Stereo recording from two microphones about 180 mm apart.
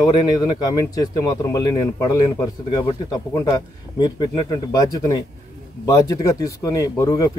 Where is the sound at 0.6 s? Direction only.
20° left (ahead or behind).